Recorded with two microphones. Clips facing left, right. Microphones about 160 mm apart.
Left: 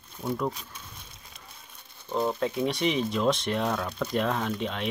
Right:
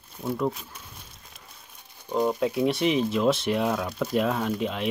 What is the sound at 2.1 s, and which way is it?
Speech, 10° right (ahead or behind).